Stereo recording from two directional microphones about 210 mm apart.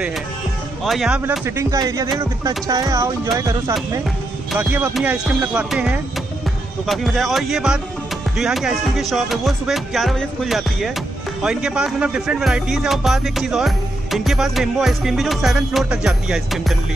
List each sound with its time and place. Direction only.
0.8 s speech: centre (ahead or behind)
4.5 s speech: 10° right (ahead or behind)